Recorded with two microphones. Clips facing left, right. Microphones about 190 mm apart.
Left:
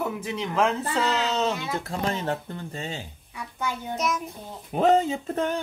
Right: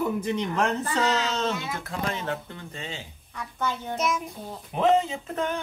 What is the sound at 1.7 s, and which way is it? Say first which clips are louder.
Speech: left 3 dB; 35° left (ahead or behind).